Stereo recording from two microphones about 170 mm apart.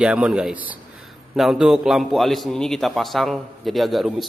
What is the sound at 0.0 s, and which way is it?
A man's voice, 5° right (ahead or behind).